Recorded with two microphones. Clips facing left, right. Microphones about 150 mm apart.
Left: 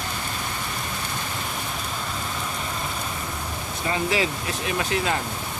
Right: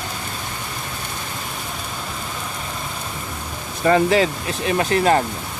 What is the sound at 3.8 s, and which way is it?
Speech, 55° right (ahead or behind).